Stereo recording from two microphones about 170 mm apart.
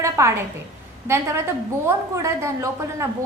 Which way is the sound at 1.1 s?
15° right (ahead or behind).